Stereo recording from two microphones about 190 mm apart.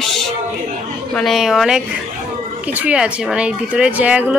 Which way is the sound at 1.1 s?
Centre (ahead or behind).